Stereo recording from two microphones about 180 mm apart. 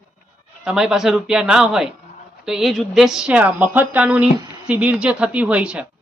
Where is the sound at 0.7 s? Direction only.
5° right (ahead or behind).